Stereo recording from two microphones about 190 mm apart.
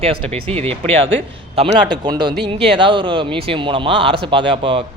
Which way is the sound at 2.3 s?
60° right (ahead or behind).